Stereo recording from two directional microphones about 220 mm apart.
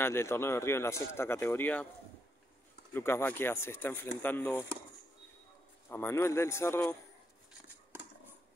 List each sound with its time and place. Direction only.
0.0 s speech: 10° left (ahead or behind)
2.9 s speech: 10° left (ahead or behind)
5.9 s speech: 10° left (ahead or behind)